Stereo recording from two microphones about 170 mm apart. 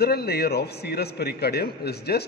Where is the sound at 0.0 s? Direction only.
70° left (ahead or behind).